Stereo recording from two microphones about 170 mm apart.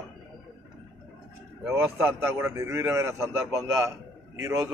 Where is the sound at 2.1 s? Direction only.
15° right (ahead or behind).